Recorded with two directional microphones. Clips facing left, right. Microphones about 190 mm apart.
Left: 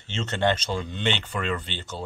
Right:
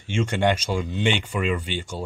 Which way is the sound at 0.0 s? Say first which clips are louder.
Right 3 dB; 10° right (ahead or behind).